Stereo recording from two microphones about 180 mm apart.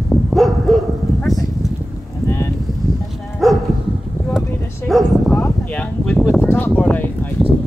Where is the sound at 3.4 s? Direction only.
Centre (ahead or behind).